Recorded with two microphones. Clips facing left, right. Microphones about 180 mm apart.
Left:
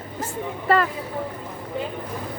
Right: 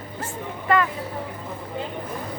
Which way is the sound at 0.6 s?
35° left (ahead or behind).